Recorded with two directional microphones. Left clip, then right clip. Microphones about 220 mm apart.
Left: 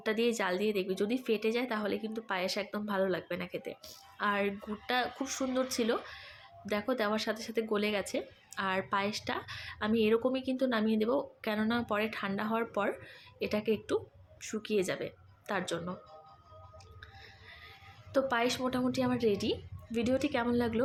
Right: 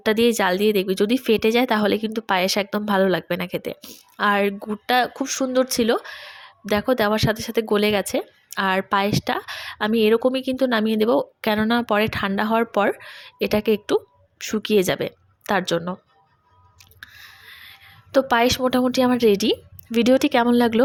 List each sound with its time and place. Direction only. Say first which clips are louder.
0.0 s speech: right 12 dB; 45° right (ahead or behind)
17.0 s speech: right 14 dB; 45° right (ahead or behind)